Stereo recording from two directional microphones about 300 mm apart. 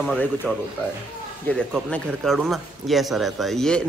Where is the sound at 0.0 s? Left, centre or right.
Centre.